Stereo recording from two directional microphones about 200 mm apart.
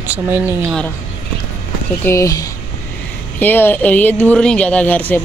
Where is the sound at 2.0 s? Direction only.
15° left (ahead or behind).